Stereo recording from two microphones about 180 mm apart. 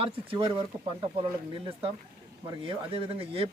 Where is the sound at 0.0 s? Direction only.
30° right (ahead or behind).